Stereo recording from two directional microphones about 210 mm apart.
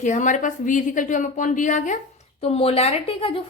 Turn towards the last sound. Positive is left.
turn(degrees=25)  # may be behind; listen again after turning